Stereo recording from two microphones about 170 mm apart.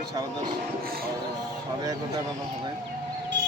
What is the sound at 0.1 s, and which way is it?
Speech, 25° right (ahead or behind).